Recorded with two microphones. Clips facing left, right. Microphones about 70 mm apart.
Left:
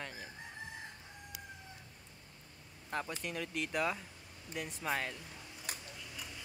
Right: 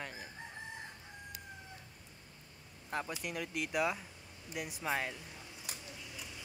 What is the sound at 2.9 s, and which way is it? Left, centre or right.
Speech, centre.